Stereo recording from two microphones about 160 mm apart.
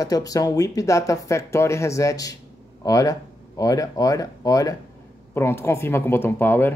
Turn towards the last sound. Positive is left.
turn(degrees=15)  # may be behind; listen again after turning